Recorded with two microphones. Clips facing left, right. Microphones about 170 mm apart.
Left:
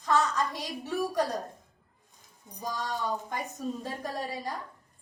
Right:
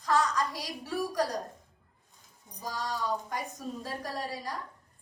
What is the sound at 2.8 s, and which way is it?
A woman's voice, 25° left (ahead or behind).